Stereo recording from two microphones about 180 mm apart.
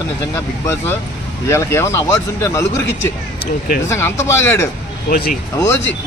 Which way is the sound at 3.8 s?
15° left (ahead or behind).